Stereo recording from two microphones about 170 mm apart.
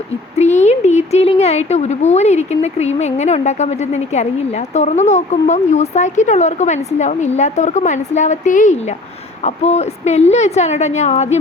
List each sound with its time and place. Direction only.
0.3 s a woman's voice: 40° left (ahead or behind)